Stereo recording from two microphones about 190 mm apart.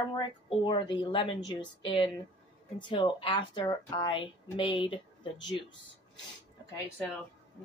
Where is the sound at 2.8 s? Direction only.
25° left (ahead or behind).